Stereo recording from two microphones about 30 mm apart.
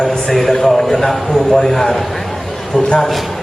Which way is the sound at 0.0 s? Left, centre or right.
Centre.